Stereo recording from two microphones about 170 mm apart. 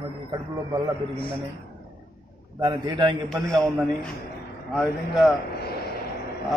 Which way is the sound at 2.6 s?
25° right (ahead or behind).